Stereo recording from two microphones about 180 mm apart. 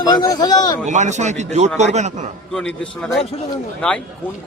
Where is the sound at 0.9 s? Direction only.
40° right (ahead or behind).